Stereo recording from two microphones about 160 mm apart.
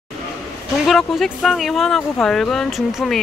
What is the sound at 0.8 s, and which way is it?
Speech, centre (ahead or behind).